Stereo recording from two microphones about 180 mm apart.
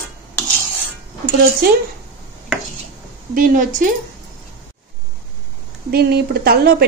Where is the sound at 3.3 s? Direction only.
50° right (ahead or behind).